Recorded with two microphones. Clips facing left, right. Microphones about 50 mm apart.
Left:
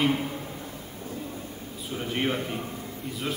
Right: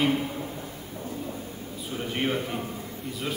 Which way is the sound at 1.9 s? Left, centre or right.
Centre.